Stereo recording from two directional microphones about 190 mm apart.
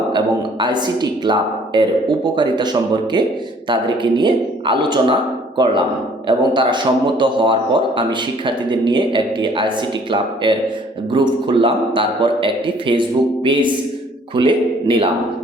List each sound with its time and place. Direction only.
0.6 s a man's voice: 20° right (ahead or behind)
6.2 s a man's voice: 25° right (ahead or behind)